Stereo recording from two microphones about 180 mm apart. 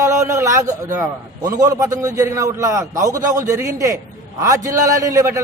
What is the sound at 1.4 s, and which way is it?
Speech, 20° right (ahead or behind).